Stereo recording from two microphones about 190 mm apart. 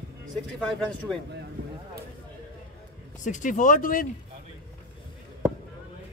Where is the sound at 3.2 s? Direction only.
40° left (ahead or behind).